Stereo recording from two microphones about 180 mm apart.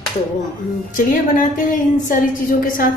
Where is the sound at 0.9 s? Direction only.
50° left (ahead or behind).